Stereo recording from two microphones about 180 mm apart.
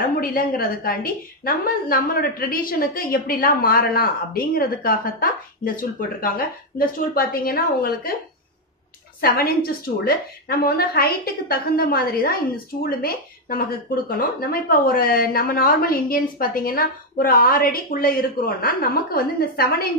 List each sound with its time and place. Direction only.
0.2 s a woman's voice: 55° left (ahead or behind)
9.2 s a woman's voice: 55° left (ahead or behind)